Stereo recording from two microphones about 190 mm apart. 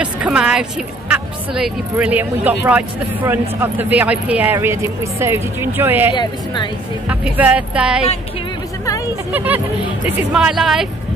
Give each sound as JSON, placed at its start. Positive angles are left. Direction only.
{"t": 0.0, "sound": "a woman's voice", "side_deg": -5}
{"t": 6.1, "sound": "a woman's voice", "side_deg": 25}
{"t": 7.1, "sound": "a woman's voice", "side_deg": -5}
{"t": 9.3, "sound": "a woman's voice", "side_deg": -10}